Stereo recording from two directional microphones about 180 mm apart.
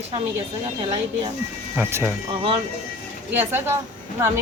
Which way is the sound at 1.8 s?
10° right (ahead or behind).